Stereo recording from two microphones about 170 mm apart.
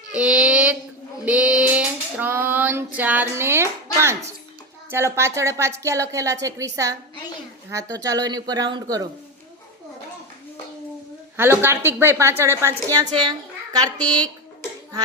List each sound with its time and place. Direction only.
0.1 s child singing: 5° right (ahead or behind)
1.2 s female singing: 5° right (ahead or behind)
4.9 s speech: 15° right (ahead or behind)
11.3 s speech: 15° right (ahead or behind)
14.0 s speech: 10° left (ahead or behind)